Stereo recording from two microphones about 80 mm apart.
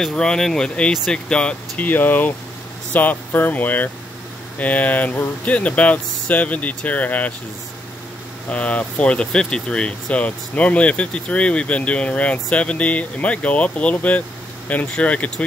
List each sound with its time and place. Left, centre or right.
0.0 s speech: centre
1.9 s speech: left
8.5 s speech: centre